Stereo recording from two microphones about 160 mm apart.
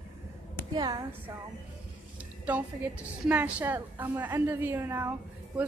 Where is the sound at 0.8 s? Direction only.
25° right (ahead or behind).